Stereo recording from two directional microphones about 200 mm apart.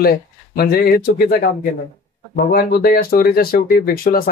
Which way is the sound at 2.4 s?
50° left (ahead or behind).